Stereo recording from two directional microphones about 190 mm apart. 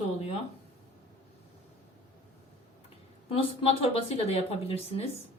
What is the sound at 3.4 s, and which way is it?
Speech, 30° left (ahead or behind).